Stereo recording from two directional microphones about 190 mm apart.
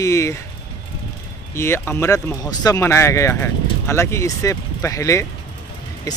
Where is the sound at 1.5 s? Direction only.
15° left (ahead or behind).